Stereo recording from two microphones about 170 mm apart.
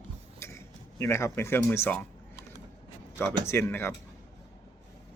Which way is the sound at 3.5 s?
15° left (ahead or behind).